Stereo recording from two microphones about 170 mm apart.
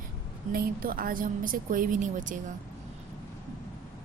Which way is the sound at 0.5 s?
60° right (ahead or behind).